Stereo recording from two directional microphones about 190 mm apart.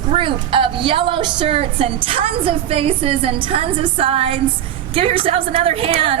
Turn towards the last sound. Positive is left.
turn(degrees=-30)  # may be behind; listen again after turning